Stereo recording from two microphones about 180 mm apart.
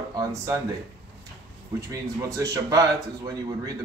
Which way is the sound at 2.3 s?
15° right (ahead or behind).